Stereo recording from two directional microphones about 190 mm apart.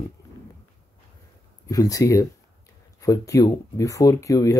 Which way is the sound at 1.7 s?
20° left (ahead or behind).